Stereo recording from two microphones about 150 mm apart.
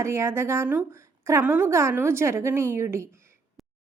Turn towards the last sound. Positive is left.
turn(degrees=-15)  # may be behind; listen again after turning